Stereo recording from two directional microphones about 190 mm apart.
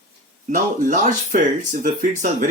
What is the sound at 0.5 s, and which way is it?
Speech, 45° right (ahead or behind).